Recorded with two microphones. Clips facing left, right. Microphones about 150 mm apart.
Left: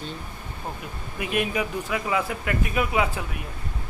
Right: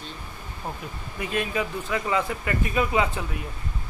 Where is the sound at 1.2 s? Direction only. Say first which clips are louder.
Left 1 dB; 15° left (ahead or behind).